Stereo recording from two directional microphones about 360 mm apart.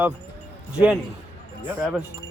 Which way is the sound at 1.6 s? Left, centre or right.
Centre.